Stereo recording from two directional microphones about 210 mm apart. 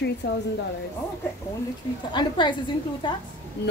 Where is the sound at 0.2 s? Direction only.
50° left (ahead or behind).